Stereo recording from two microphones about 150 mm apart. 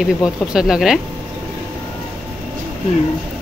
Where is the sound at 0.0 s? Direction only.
5° right (ahead or behind).